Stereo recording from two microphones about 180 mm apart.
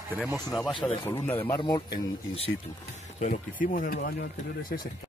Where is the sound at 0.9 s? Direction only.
20° left (ahead or behind).